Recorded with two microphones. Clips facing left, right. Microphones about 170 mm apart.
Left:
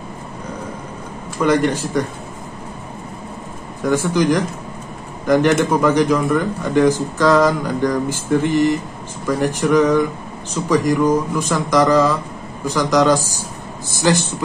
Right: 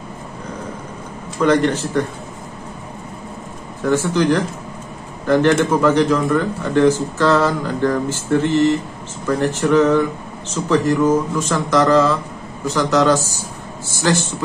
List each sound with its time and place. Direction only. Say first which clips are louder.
1.4 s speech: right 1 dB; 10° left (ahead or behind)
3.8 s a man's voice: even; 15° left (ahead or behind)